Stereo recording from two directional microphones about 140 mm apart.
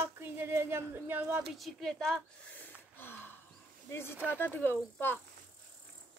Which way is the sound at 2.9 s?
15° left (ahead or behind).